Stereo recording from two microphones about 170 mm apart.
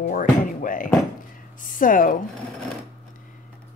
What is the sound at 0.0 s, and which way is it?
Music, 55° left (ahead or behind).